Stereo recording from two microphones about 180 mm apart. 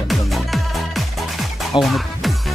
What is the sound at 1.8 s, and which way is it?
Music, centre (ahead or behind).